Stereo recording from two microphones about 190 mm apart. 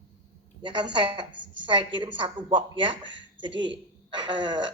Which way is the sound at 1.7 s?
25° right (ahead or behind).